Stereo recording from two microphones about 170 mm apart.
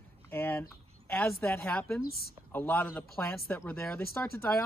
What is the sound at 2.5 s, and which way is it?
Speech, 10° left (ahead or behind).